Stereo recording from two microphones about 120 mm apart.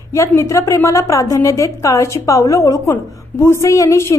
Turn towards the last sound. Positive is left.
turn(degrees=25)  # may be behind; listen again after turning